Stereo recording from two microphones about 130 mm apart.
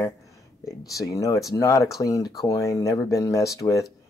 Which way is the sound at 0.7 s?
25° left (ahead or behind).